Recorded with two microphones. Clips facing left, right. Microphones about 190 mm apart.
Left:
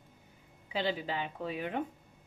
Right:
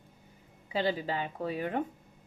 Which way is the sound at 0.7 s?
40° right (ahead or behind).